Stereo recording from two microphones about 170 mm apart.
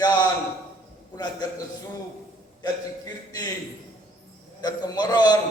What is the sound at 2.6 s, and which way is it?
Speech, 20° left (ahead or behind).